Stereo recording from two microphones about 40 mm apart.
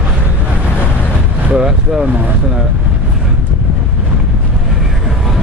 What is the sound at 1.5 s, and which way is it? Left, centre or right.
Vehicle, centre.